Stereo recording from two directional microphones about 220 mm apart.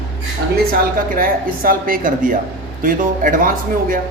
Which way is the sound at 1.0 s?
40° right (ahead or behind).